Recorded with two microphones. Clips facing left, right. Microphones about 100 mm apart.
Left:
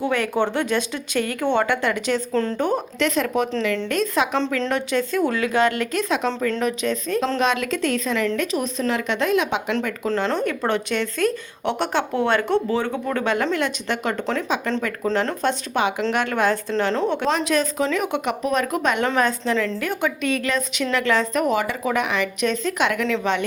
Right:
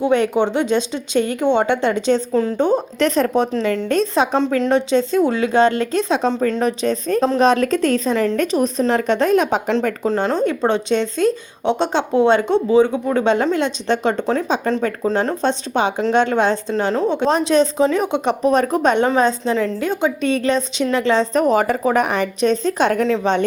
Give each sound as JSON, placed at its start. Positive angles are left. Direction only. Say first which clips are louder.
{"t": 0.0, "sound": "speech", "louder": "right 5 dB", "side_deg": -20}
{"t": 2.3, "sound": "speech", "louder": "right 4 dB", "side_deg": -10}
{"t": 2.6, "sound": "speech", "louder": "right 8 dB", "side_deg": -25}
{"t": 3.0, "sound": "a woman's voice", "louder": "right 4 dB", "side_deg": -35}
{"t": 10.1, "sound": "a woman's voice", "louder": "right 3 dB", "side_deg": -20}
{"t": 15.0, "sound": "speech", "louder": "right 2 dB", "side_deg": -15}
{"t": 16.7, "sound": "speech", "louder": "right 3 dB", "side_deg": -10}
{"t": 17.2, "sound": "a woman's voice", "louder": "right 5 dB", "side_deg": -30}